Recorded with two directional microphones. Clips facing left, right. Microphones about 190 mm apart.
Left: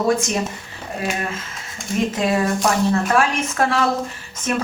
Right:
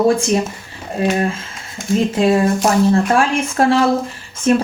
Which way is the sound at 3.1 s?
30° right (ahead or behind).